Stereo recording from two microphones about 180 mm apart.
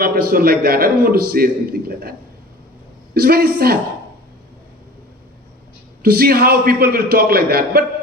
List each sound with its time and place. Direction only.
0.0 s a man's voice: 55° right (ahead or behind)
3.2 s a man's voice: 55° right (ahead or behind)
6.0 s a man's voice: 55° right (ahead or behind)